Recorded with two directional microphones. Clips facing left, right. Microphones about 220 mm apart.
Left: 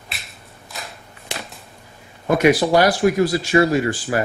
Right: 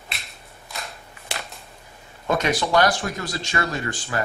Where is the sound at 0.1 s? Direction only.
Centre (ahead or behind).